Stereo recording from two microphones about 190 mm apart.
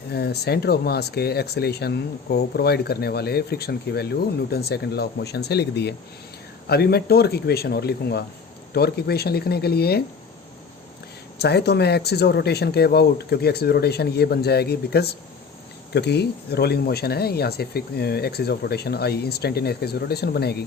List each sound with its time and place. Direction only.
0.1 s speech: 60° left (ahead or behind)
11.3 s speech: 60° left (ahead or behind)